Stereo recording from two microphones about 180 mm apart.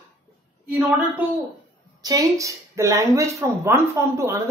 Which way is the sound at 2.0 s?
20° right (ahead or behind).